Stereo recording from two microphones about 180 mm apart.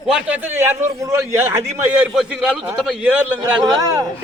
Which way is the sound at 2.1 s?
5° right (ahead or behind).